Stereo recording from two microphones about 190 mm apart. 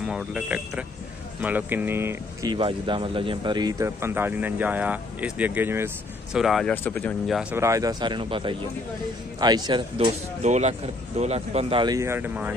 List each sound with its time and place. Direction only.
0.0 s speech: 5° right (ahead or behind)
2.5 s speech: 25° right (ahead or behind); by 5.9 s 10° right (ahead or behind)
6.3 s speech: centre (ahead or behind)
7.5 s speech: 15° right (ahead or behind)
10.4 s speech: 35° right (ahead or behind); by 12.5 s 10° right (ahead or behind)